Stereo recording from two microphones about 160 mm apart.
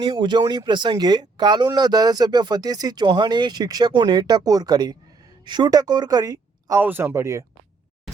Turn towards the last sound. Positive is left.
turn(degrees=-20)  # may be behind; listen again after turning